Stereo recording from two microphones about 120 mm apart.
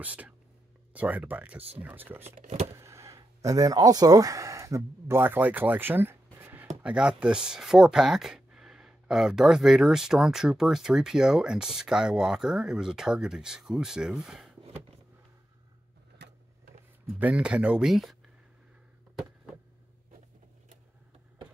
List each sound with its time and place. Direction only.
0.0 s speech: 15° right (ahead or behind)
6.4 s chopping: 15° right (ahead or behind)
6.8 s speech: 5° right (ahead or behind)
17.2 s speech: 10° right (ahead or behind)